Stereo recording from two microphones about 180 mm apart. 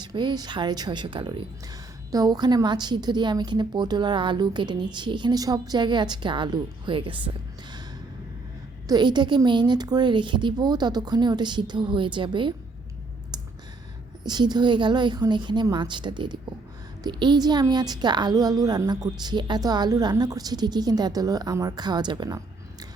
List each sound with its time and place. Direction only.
0.0 s a woman's voice: 25° right (ahead or behind)
8.9 s a woman's voice: 25° right (ahead or behind)
14.3 s a woman's voice: 25° right (ahead or behind)